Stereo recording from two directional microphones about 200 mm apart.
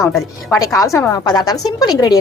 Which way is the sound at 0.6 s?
15° left (ahead or behind).